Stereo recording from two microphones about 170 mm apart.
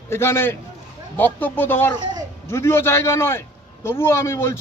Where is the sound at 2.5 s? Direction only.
15° left (ahead or behind).